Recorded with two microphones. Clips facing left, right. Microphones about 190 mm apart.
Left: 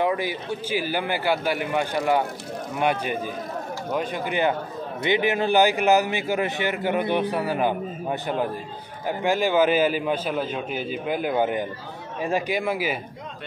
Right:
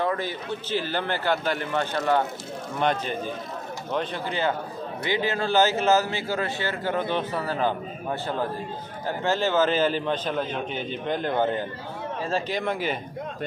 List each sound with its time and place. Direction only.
0.0 s a man's voice: 10° left (ahead or behind)